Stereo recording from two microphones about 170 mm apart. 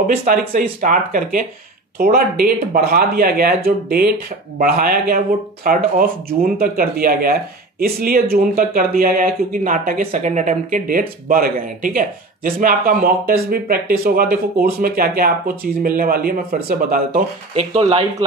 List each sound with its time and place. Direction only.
0.2 s speech: 55° right (ahead or behind)
17.7 s speech: 35° right (ahead or behind)